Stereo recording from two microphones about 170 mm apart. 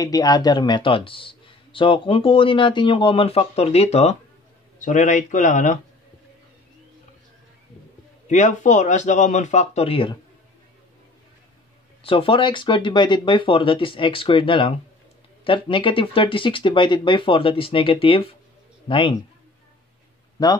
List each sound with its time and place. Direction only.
0.0 s a man's voice: 20° left (ahead or behind); by 5.8 s 45° left (ahead or behind)
8.3 s speech: 45° left (ahead or behind)
12.0 s a man's voice: 35° left (ahead or behind)
20.4 s speech: 20° left (ahead or behind)